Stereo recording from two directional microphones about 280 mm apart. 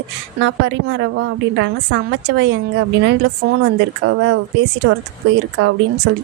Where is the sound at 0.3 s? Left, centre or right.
Right.